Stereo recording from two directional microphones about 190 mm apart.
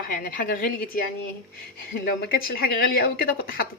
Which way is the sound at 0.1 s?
45° left (ahead or behind).